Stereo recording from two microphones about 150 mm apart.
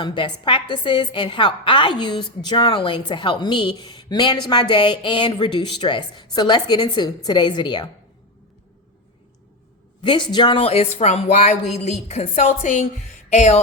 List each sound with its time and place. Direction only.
0.0 s a woman's voice: 30° left (ahead or behind)
10.0 s speech: 30° left (ahead or behind); by 12.7 s 50° left (ahead or behind)
13.1 s music: 50° left (ahead or behind)